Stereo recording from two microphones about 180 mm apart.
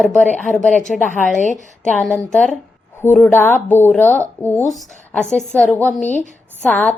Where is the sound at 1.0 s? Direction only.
45° left (ahead or behind).